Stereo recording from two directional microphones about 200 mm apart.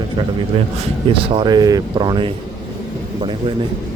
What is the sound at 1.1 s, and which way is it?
Speech, 25° right (ahead or behind).